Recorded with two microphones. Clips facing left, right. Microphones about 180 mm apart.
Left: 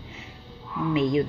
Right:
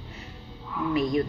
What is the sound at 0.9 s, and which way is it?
Speech, 20° left (ahead or behind).